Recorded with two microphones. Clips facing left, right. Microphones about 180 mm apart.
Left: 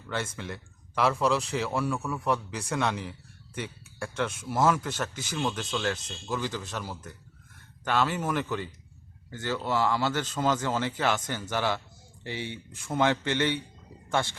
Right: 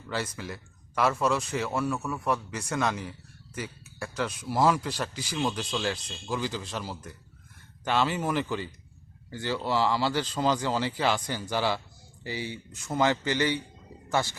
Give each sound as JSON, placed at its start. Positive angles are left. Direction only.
{"t": 0.1, "sound": "a man's voice", "side_deg": -5}